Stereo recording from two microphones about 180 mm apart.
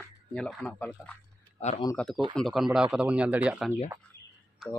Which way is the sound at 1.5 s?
35° left (ahead or behind).